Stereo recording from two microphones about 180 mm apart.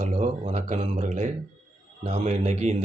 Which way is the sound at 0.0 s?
40° right (ahead or behind).